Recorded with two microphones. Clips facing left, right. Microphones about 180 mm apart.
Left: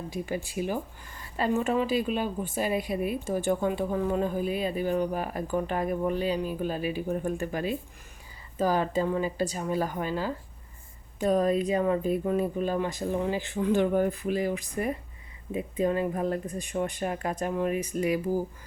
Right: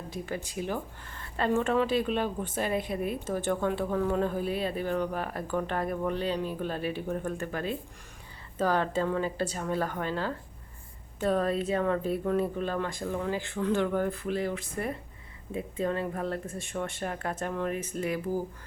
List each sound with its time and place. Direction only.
0.3 s a woman's voice: 10° left (ahead or behind)